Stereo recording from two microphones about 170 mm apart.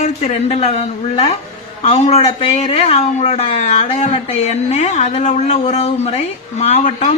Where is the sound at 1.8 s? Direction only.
40° left (ahead or behind).